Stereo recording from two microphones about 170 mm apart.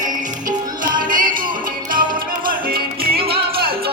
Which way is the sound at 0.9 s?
55° right (ahead or behind).